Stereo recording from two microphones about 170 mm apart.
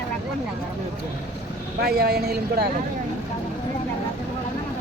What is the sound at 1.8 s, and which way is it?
Speech, 70° right (ahead or behind).